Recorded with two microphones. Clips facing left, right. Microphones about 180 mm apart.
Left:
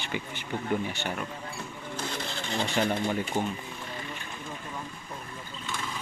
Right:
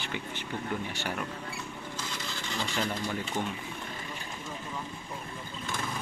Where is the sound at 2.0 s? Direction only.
60° left (ahead or behind).